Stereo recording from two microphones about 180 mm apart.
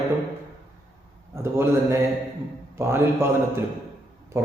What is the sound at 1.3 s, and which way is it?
A man's voice, 15° right (ahead or behind).